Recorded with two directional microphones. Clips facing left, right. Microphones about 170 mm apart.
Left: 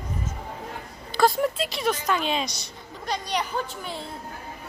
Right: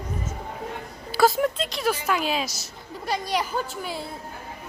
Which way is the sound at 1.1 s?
5° right (ahead or behind).